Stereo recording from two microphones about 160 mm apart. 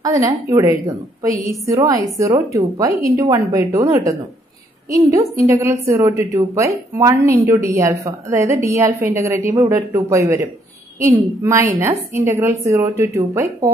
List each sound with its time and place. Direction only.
0.0 s a woman's voice: 20° right (ahead or behind)